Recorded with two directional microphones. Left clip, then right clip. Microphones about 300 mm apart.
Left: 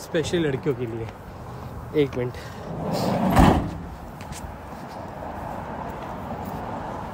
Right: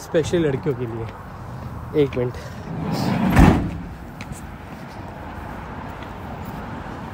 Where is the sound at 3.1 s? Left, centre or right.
Left.